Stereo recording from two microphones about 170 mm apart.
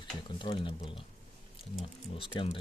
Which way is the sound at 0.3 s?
30° left (ahead or behind).